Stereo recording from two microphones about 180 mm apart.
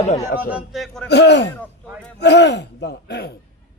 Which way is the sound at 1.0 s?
70° left (ahead or behind).